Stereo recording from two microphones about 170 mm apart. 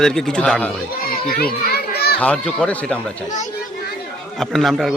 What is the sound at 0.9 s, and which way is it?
Children playing, 60° left (ahead or behind).